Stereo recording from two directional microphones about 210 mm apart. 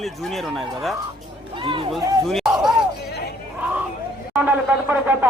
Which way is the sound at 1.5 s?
25° right (ahead or behind).